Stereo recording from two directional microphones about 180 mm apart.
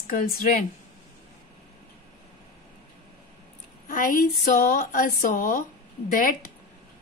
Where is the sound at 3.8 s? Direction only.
50° left (ahead or behind).